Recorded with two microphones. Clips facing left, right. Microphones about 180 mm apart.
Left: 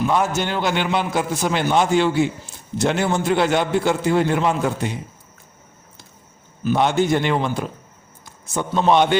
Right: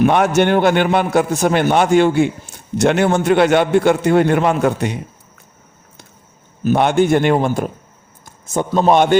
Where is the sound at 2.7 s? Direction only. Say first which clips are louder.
Right 6 dB; 70° right (ahead or behind).